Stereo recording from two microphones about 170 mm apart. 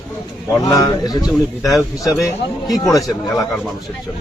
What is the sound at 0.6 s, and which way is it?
Speech, 20° left (ahead or behind).